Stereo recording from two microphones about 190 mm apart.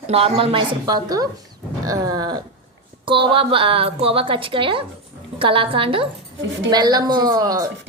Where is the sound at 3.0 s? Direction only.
25° right (ahead or behind).